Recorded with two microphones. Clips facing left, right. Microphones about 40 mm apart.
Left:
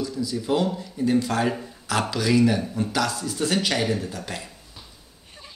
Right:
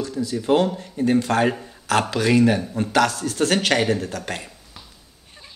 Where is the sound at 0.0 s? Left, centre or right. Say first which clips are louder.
Right 2 dB; right.